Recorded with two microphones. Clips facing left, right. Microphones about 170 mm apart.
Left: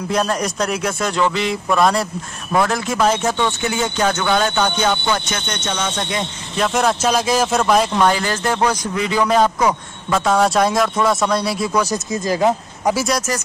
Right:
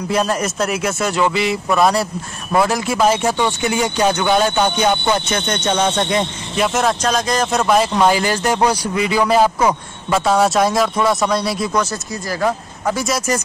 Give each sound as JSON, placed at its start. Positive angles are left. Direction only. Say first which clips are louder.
{"t": 0.1, "sound": "a man's voice", "louder": "right 1 dB", "side_deg": -5}
{"t": 6.6, "sound": "a man's voice", "louder": "even", "side_deg": 0}
{"t": 8.0, "sound": "a man's voice", "louder": "right 2 dB", "side_deg": -10}
{"t": 11.8, "sound": "speech", "louder": "left 3 dB", "side_deg": 15}
{"t": 12.9, "sound": "a man's voice", "louder": "even", "side_deg": 0}